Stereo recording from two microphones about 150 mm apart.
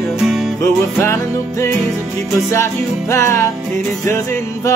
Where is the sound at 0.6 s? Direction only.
20° left (ahead or behind).